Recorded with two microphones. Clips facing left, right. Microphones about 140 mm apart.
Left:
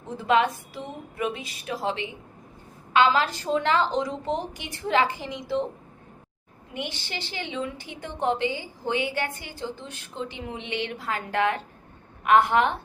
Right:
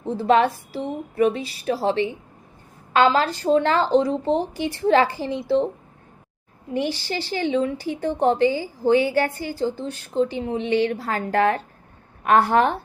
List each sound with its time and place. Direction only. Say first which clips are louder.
0.2 s a woman's voice: right 4 dB; 35° right (ahead or behind)
6.7 s a woman's voice: right 9 dB; 35° right (ahead or behind)